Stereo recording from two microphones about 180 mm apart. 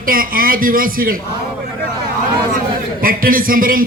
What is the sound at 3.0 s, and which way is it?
Speech, 50° right (ahead or behind).